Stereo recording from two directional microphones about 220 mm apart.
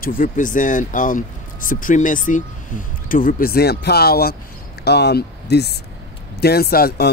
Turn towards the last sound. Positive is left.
turn(degrees=45)  # may be behind; listen again after turning